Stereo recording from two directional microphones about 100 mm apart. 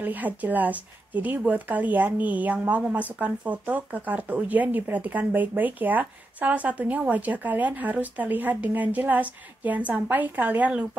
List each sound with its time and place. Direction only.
0.0 s a woman's voice: 15° right (ahead or behind)